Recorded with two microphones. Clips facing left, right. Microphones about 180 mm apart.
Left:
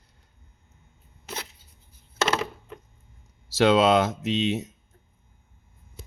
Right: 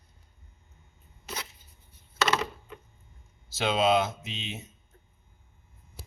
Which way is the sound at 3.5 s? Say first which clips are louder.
Left 6 dB; 90° left.